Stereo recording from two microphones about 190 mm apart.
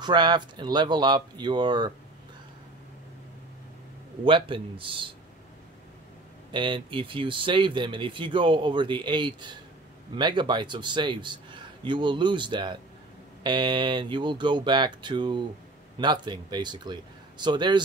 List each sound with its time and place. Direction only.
0.0 s speech: 25° right (ahead or behind)
4.2 s speech: 25° right (ahead or behind)
6.5 s speech: 25° right (ahead or behind)